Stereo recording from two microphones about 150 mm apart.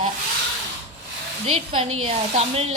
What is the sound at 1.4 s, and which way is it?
A woman's voice, 40° right (ahead or behind).